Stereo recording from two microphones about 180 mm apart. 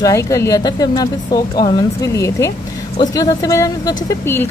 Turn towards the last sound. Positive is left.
turn(degrees=15)  # may be behind; listen again after turning